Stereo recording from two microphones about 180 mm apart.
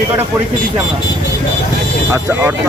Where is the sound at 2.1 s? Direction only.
15° right (ahead or behind).